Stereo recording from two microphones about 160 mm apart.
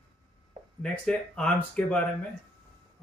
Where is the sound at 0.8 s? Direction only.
5° left (ahead or behind).